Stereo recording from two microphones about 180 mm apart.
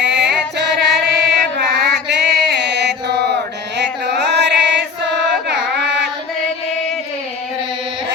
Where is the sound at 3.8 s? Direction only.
70° right (ahead or behind).